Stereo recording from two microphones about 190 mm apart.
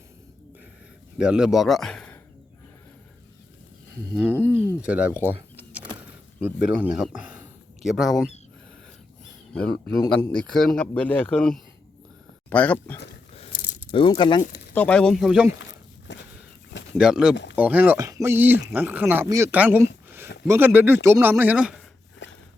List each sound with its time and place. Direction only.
1.2 s speech: 5° right (ahead or behind)
4.1 s speech: centre (ahead or behind)
5.5 s power windows: 10° right (ahead or behind)
6.4 s speech: 5° right (ahead or behind)
9.5 s speech: 5° left (ahead or behind)
13.3 s a sound: 30° left (ahead or behind)
14.8 s speech: 5° left (ahead or behind)
16.1 s walk: 70° left (ahead or behind)
16.9 s speech: 5° right (ahead or behind)
22.2 s walk: 70° left (ahead or behind)